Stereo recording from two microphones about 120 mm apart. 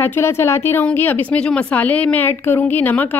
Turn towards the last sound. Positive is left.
turn(degrees=15)  # may be behind; listen again after turning